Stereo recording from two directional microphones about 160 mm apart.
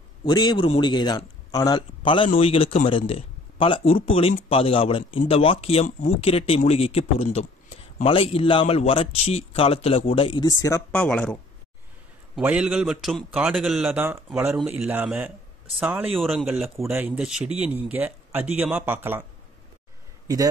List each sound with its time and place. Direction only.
0.2 s a man's voice: 25° left (ahead or behind)
10.9 s speech: 5° left (ahead or behind)
12.4 s a man's voice: 5° right (ahead or behind)